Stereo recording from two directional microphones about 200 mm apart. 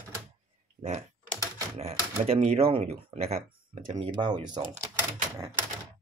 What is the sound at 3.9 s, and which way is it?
Speech, 25° right (ahead or behind).